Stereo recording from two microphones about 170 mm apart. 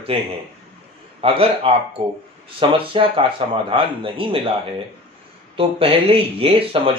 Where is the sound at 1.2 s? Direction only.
35° right (ahead or behind).